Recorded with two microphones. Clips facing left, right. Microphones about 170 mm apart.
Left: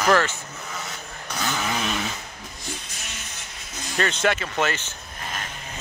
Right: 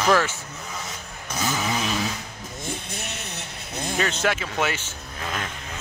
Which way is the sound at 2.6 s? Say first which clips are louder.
Right 5 dB; 60° right (ahead or behind).